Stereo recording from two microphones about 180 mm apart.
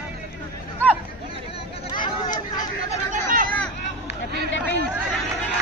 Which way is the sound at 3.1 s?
50° right (ahead or behind).